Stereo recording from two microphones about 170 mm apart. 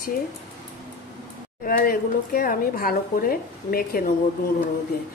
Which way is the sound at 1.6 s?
60° left (ahead or behind).